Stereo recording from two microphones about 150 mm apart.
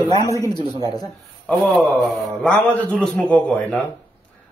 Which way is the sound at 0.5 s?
30° left (ahead or behind).